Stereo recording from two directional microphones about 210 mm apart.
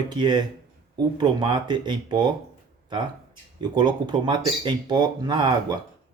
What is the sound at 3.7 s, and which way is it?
Speech, 20° right (ahead or behind).